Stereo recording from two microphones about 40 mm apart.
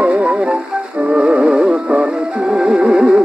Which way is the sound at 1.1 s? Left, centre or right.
Right.